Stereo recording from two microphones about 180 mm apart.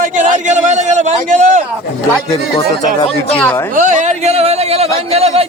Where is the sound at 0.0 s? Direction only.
40° right (ahead or behind).